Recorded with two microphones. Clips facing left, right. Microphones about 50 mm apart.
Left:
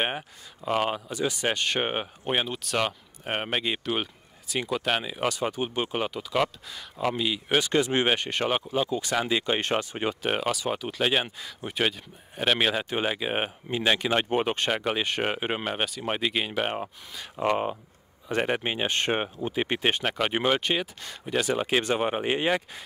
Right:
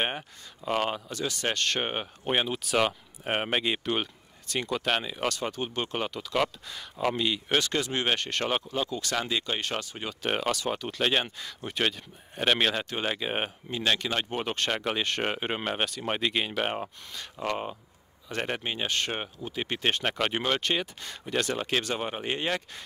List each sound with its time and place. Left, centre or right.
0.0 s speech: centre; by 10.1 s left
10.2 s speech: centre
17.4 s speech: centre
20.0 s speech: centre